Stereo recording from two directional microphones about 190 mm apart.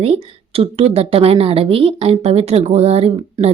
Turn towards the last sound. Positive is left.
turn(degrees=-30)  # may be behind; listen again after turning